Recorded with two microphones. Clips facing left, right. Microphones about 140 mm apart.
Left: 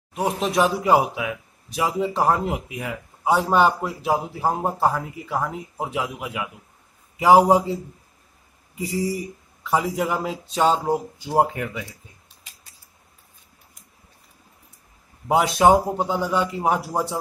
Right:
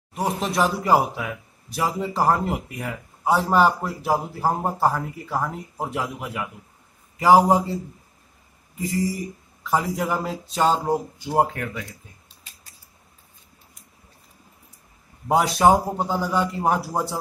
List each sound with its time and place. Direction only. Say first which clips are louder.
0.1 s a man's voice: left 2 dB; 5° left (ahead or behind)
9.6 s a man's voice: left 1 dB; centre (ahead or behind)
11.3 s speech: left 1 dB; 10° left (ahead or behind)
15.2 s a man's voice: left 1 dB; 5° left (ahead or behind)